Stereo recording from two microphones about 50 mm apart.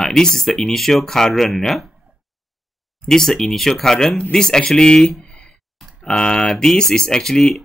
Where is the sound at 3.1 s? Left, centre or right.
Centre.